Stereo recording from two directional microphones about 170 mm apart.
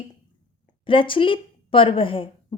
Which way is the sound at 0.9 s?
30° left (ahead or behind).